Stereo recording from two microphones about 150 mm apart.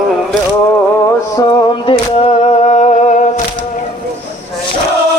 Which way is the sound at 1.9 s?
40° left (ahead or behind).